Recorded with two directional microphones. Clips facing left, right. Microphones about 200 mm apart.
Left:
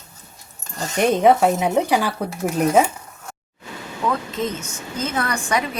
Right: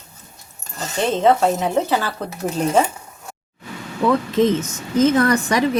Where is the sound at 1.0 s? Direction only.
15° left (ahead or behind).